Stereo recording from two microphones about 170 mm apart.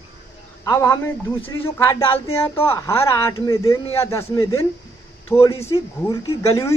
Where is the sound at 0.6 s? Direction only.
20° left (ahead or behind).